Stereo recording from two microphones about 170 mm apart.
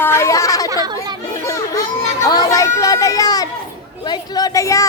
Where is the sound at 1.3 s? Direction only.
20° left (ahead or behind).